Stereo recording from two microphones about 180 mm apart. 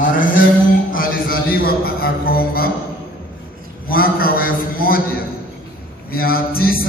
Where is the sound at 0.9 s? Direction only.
55° left (ahead or behind).